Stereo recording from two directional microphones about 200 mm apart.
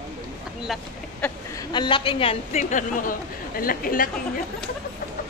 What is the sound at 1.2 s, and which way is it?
A woman's voice, 20° left (ahead or behind).